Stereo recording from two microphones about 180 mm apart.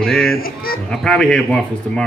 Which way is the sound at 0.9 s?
5° left (ahead or behind).